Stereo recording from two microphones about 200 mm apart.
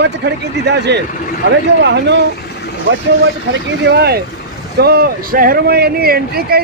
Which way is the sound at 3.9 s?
55° right (ahead or behind).